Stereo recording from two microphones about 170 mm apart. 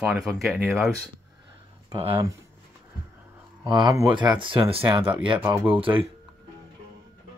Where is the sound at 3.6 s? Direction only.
25° right (ahead or behind).